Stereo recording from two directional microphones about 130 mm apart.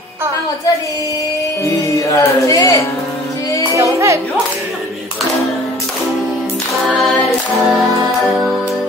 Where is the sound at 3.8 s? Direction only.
20° right (ahead or behind).